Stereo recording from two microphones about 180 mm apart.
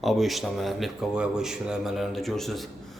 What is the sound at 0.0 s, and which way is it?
A man's voice, centre (ahead or behind).